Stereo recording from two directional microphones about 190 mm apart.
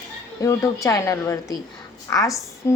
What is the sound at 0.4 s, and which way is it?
A woman's voice, 15° left (ahead or behind).